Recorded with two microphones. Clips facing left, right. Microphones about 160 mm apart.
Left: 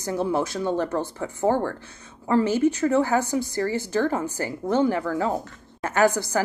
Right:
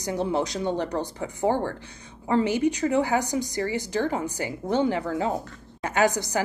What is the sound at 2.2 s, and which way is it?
Speech, 20° right (ahead or behind).